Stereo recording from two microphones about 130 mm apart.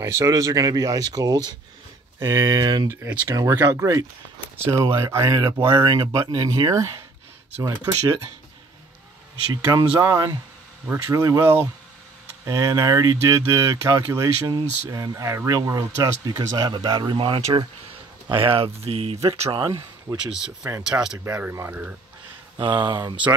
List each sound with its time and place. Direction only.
0.0 s speech: 20° right (ahead or behind)
2.9 s speech: 20° right (ahead or behind)
5.7 s speech: 35° right (ahead or behind)
9.5 s speech: 30° right (ahead or behind); by 19.5 s 55° right (ahead or behind)
19.5 s speech: 30° right (ahead or behind)
20.2 s speech: 5° right (ahead or behind)
21.2 s speech: 15° right (ahead or behind)
22.6 s speech: 35° right (ahead or behind)